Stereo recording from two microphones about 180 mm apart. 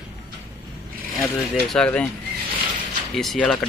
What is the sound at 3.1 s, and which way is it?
Speech, centre (ahead or behind).